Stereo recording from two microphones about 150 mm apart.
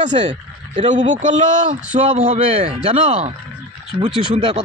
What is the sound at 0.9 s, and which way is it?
Speech, 55° right (ahead or behind).